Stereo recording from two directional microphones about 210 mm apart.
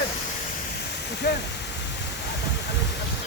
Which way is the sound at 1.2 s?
50° left (ahead or behind).